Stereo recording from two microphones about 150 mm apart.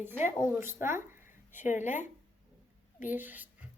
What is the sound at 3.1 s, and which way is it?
Speech, 10° right (ahead or behind).